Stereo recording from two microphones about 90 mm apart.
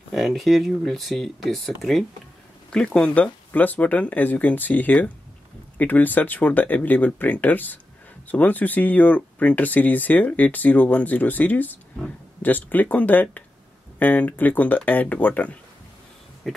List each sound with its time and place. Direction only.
0.1 s speech: centre (ahead or behind); by 15.5 s 20° left (ahead or behind)
16.5 s speech: 5° left (ahead or behind)